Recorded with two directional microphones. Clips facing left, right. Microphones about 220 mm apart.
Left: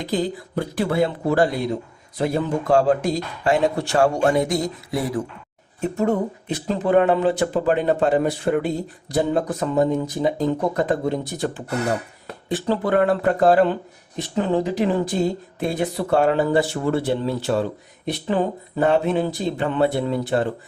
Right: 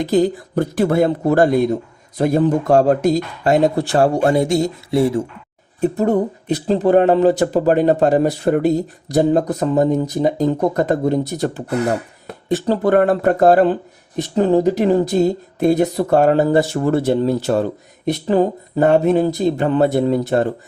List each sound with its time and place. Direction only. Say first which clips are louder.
0.0 s speech: right 8 dB; 45° right (ahead or behind)